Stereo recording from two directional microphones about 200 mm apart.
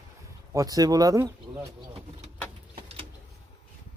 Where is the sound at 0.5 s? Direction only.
20° right (ahead or behind).